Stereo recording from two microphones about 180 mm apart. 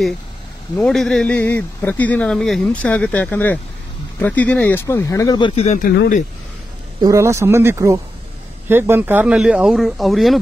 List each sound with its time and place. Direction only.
0.8 s speech: 5° left (ahead or behind); by 5.5 s 20° left (ahead or behind)
5.6 s speech: 45° left (ahead or behind)
7.0 s speech: 15° right (ahead or behind); by 10.4 s centre (ahead or behind)